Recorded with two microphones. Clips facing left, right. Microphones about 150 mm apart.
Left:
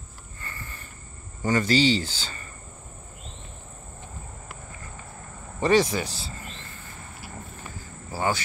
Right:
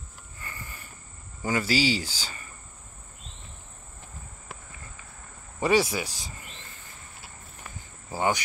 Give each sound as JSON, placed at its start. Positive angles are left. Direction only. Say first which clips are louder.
{"t": 0.4, "sound": "a sound", "louder": "left 1 dB", "side_deg": -10}
{"t": 1.4, "sound": "speech", "louder": "left 4 dB", "side_deg": -10}
{"t": 5.6, "sound": "speech", "louder": "left 2 dB", "side_deg": -10}
{"t": 8.1, "sound": "speech", "louder": "even", "side_deg": -20}